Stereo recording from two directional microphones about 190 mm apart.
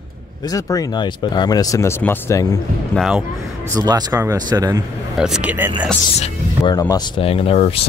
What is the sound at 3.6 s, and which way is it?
Speech, 20° right (ahead or behind).